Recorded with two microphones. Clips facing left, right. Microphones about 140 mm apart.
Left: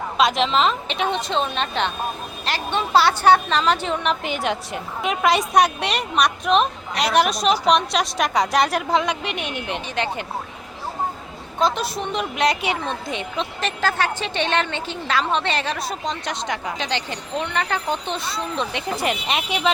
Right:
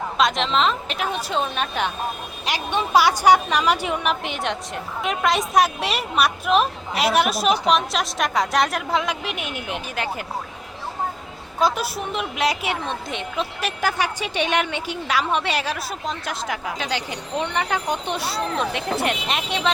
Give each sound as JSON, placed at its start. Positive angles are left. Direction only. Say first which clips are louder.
{"t": 0.2, "sound": "a woman's voice", "louder": "left 2 dB", "side_deg": 0}
{"t": 11.6, "sound": "a woman's voice", "louder": "even", "side_deg": -5}
{"t": 17.3, "sound": "a woman's voice", "louder": "even", "side_deg": -15}
{"t": 18.5, "sound": "a woman's voice", "louder": "even", "side_deg": 0}